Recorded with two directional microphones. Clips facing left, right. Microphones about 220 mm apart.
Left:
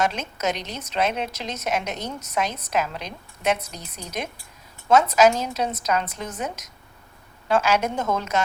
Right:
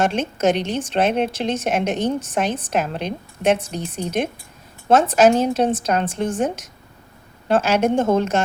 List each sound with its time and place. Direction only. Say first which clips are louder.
0.0 s a woman's voice: right 6 dB; 30° right (ahead or behind)
7.8 s a woman's voice: right 9 dB; 30° right (ahead or behind)